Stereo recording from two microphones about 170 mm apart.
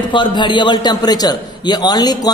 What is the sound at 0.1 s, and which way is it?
A man's voice, 25° left (ahead or behind).